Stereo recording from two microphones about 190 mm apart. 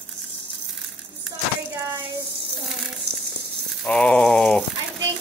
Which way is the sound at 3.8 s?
5° left (ahead or behind).